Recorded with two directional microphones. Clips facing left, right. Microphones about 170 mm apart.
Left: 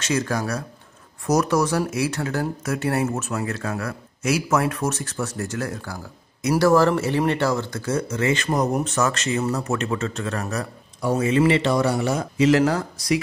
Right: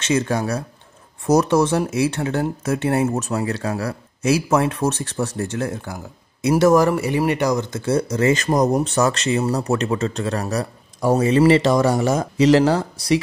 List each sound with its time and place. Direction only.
0.1 s speech: 25° right (ahead or behind)